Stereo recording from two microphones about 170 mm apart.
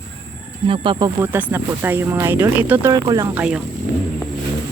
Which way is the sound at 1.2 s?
10° right (ahead or behind).